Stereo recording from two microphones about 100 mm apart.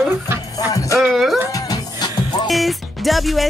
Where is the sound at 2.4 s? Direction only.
Centre (ahead or behind).